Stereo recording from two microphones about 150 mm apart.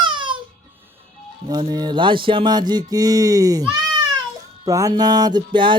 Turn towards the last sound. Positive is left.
turn(degrees=-30)  # may be behind; listen again after turning